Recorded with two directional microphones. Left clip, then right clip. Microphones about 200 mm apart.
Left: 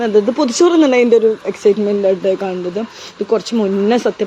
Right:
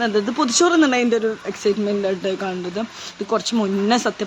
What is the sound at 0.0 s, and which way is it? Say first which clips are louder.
Speech: left 6 dB; 5° left (ahead or behind).